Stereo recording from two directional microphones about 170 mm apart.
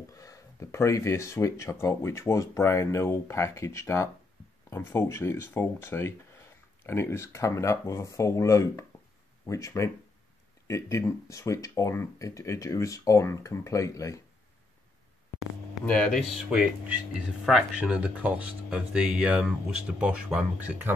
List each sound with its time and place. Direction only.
0.1 s speech: 20° left (ahead or behind)
15.8 s speech: 5° left (ahead or behind); by 20.9 s 10° right (ahead or behind)